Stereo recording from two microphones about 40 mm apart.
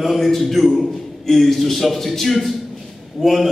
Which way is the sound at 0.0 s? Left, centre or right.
Centre.